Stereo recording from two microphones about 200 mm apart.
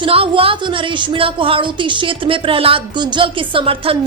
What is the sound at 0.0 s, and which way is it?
A woman's voice, 25° right (ahead or behind).